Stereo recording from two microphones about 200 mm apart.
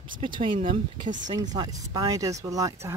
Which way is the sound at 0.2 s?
25° right (ahead or behind).